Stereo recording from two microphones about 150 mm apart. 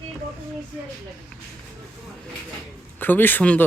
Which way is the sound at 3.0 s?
15° left (ahead or behind).